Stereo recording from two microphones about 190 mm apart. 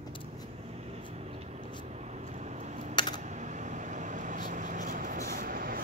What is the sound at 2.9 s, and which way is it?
Typing, 25° left (ahead or behind).